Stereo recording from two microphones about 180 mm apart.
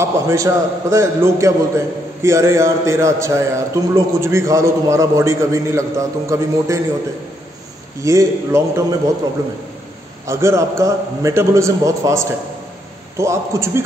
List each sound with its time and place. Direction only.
0.0 s a man's voice: 15° right (ahead or behind)
8.0 s a man's voice: 15° right (ahead or behind)
10.2 s a man's voice: 15° right (ahead or behind)